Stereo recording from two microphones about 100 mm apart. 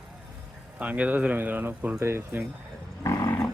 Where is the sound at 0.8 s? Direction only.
15° right (ahead or behind).